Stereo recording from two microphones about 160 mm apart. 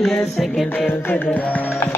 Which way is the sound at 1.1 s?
10° left (ahead or behind).